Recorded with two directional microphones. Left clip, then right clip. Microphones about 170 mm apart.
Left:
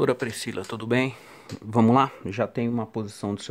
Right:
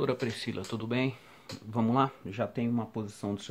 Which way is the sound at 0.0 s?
65° left (ahead or behind).